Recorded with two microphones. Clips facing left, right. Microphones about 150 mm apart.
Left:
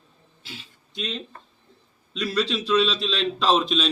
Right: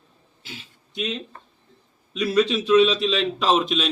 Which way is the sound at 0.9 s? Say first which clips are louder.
Right 3 dB; 10° right (ahead or behind).